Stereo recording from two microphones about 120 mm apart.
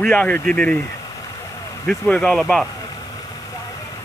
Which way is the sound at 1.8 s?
10° left (ahead or behind).